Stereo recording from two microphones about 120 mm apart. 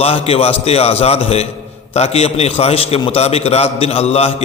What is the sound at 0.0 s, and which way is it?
A man's voice, 55° left (ahead or behind).